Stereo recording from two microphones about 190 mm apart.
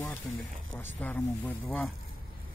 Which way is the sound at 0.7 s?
10° left (ahead or behind).